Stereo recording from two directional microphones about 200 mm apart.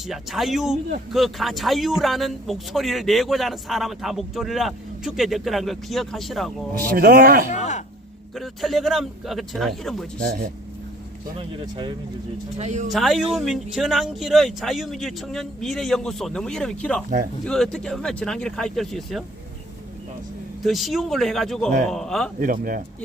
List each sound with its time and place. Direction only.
0.1 s speech: centre (ahead or behind)
6.9 s speech: 50° right (ahead or behind)
7.5 s speech: 35° left (ahead or behind)
8.4 s speech: centre (ahead or behind)
10.2 s speech: 45° right (ahead or behind)
11.3 s speech: 25° right (ahead or behind)
12.5 s speech: 35° right (ahead or behind)
12.9 s speech: centre (ahead or behind)
20.6 s speech: centre (ahead or behind)
22.4 s speech: 45° right (ahead or behind)